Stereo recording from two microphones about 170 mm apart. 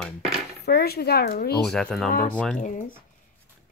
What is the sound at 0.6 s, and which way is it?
Speech, 65° left (ahead or behind).